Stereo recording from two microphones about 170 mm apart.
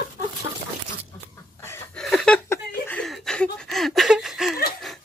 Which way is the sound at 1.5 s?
15° left (ahead or behind).